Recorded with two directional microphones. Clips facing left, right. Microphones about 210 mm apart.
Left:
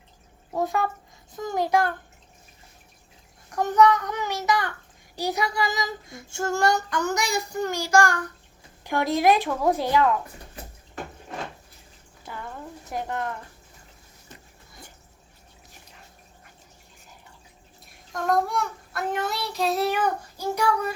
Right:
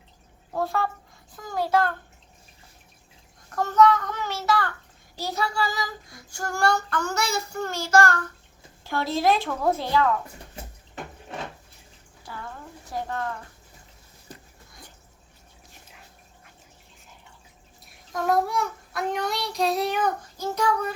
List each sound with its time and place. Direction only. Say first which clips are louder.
0.5 s child singing: left 1 dB; 15° left (ahead or behind)
3.5 s child singing: even; 15° left (ahead or behind)
12.2 s speech: left 2 dB; 20° left (ahead or behind)
14.3 s a sound: right 4 dB; 35° right (ahead or behind)
18.1 s child singing: right 1 dB; centre (ahead or behind)